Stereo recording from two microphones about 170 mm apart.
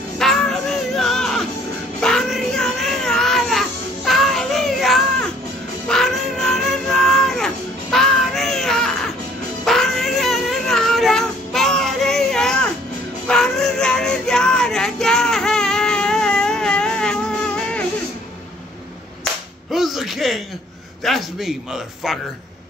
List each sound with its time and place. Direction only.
0.2 s music: 5° left (ahead or behind)
2.0 s baby cry: 5° left (ahead or behind)
5.9 s cat: centre (ahead or behind)
13.3 s child singing: 5° left (ahead or behind)
19.7 s a sound: centre (ahead or behind)